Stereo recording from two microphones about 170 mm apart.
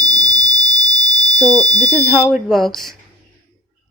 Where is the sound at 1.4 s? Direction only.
25° right (ahead or behind).